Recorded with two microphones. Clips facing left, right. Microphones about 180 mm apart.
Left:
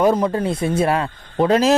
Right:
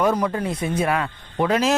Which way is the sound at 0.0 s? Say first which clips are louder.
Left 4 dB; 30° left (ahead or behind).